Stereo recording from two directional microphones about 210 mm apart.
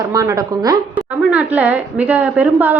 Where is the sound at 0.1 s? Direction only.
15° right (ahead or behind).